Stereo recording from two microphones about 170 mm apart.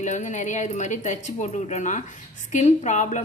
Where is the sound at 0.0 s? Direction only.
45° left (ahead or behind).